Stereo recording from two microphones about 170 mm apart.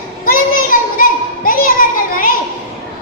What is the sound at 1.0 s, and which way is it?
Children playing, 55° left (ahead or behind).